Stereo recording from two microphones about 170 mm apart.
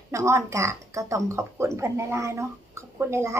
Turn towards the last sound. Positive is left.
turn(degrees=-15)  # may be behind; listen again after turning